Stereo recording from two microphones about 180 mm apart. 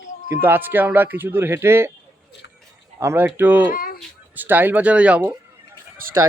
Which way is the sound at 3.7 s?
55° left (ahead or behind).